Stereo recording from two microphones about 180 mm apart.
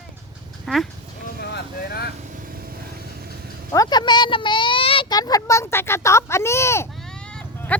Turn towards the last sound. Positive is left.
turn(degrees=5)  # may be behind; listen again after turning